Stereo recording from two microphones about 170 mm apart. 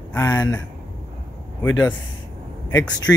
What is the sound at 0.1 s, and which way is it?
Speech, 15° left (ahead or behind).